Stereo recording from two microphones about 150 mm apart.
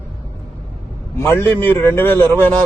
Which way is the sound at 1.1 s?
15° left (ahead or behind).